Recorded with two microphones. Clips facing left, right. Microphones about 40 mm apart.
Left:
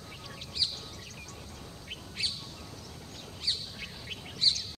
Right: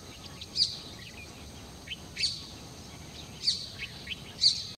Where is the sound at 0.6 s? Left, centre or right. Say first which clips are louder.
Right 1 dB; left.